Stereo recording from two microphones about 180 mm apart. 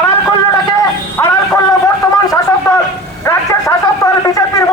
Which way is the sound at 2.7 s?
15° left (ahead or behind).